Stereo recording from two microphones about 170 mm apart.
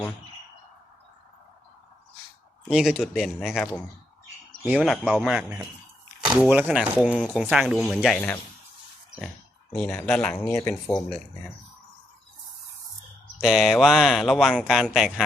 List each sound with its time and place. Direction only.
2.6 s speech: 5° right (ahead or behind)
9.7 s speech: 5° left (ahead or behind)
10.6 s speech: 15° left (ahead or behind)
10.9 s speech: 5° left (ahead or behind)
13.4 s speech: centre (ahead or behind)